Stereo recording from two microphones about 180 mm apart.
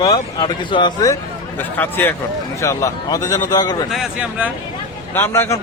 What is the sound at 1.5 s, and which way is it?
A man's voice, 10° left (ahead or behind).